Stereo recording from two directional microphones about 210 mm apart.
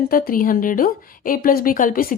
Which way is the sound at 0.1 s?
40° left (ahead or behind).